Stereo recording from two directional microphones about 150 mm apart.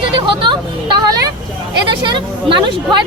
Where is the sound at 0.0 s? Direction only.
35° right (ahead or behind).